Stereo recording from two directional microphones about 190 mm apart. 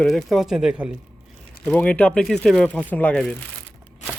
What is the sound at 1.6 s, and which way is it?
Speech, 5° left (ahead or behind).